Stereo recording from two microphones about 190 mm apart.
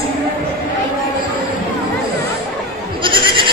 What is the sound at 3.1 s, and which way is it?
Goat, 25° right (ahead or behind).